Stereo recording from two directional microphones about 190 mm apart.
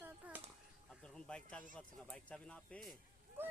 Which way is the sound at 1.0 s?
5° left (ahead or behind).